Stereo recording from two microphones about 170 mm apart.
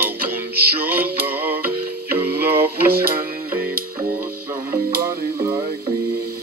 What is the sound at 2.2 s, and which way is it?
Music, 65° right (ahead or behind).